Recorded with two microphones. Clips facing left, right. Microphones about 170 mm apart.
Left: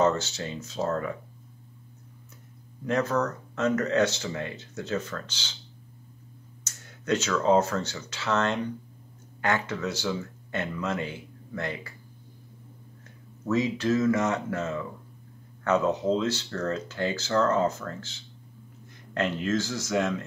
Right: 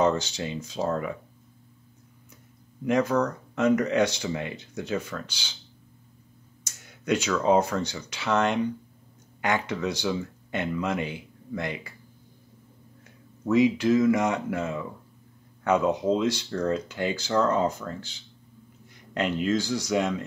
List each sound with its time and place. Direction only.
0.0 s speech: 15° right (ahead or behind)
2.8 s speech: 15° right (ahead or behind)
6.6 s speech: 15° right (ahead or behind)
13.5 s speech: 15° right (ahead or behind)